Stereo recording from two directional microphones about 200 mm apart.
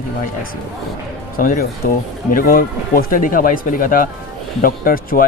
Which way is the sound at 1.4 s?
45° left (ahead or behind).